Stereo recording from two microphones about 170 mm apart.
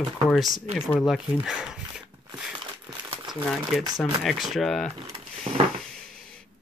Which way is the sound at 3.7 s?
Centre (ahead or behind).